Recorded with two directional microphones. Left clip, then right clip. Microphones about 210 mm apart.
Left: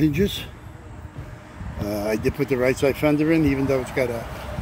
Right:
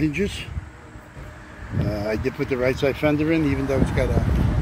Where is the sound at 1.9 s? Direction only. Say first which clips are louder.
Left 2 dB; 10° left (ahead or behind).